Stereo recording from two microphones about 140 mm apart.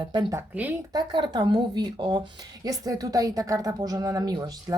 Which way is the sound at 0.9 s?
30° right (ahead or behind).